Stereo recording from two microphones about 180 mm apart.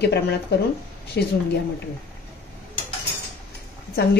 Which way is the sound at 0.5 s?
65° left (ahead or behind).